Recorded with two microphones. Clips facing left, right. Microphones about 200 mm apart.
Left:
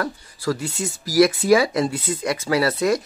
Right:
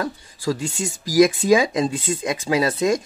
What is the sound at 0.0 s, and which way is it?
Speech, 15° right (ahead or behind).